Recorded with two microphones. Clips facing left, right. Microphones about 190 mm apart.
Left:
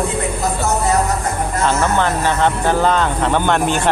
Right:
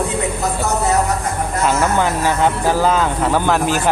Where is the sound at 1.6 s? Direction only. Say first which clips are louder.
Even; 10° right (ahead or behind).